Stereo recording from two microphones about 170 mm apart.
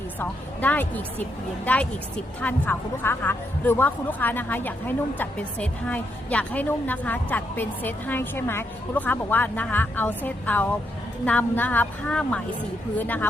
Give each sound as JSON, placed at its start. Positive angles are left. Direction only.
{"t": 0.2, "sound": "speech", "side_deg": 10}